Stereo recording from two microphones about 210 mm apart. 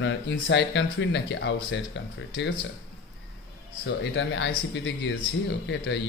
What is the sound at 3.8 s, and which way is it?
Speech, 60° left (ahead or behind).